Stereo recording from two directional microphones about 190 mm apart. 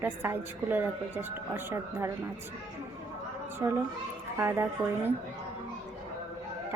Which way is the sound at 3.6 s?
15° right (ahead or behind).